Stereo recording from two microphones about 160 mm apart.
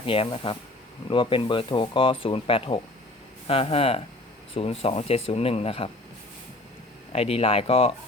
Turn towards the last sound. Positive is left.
turn(degrees=35)  # may be behind; listen again after turning